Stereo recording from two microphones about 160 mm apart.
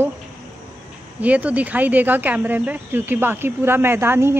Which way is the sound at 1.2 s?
10° right (ahead or behind).